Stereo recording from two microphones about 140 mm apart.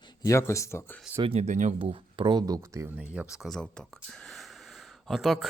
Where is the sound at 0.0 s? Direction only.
30° left (ahead or behind).